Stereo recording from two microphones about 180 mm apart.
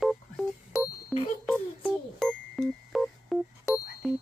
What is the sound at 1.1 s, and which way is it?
Speech, centre (ahead or behind).